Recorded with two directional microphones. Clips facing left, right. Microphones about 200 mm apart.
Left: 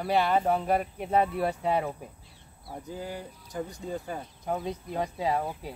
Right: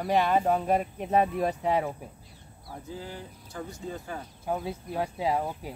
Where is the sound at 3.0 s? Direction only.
15° left (ahead or behind).